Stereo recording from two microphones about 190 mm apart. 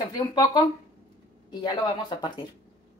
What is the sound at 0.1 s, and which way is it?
Speech, 20° left (ahead or behind).